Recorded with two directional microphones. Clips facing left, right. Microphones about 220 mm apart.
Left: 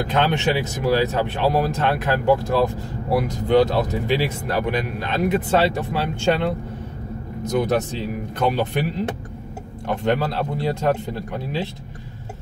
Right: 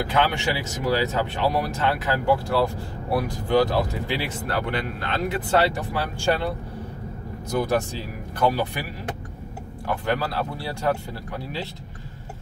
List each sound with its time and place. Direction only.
0.1 s speech: 20° left (ahead or behind)
7.4 s speech: 20° left (ahead or behind)
9.8 s speech: 25° left (ahead or behind)